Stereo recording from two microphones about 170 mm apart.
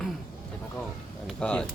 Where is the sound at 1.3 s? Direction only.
5° left (ahead or behind).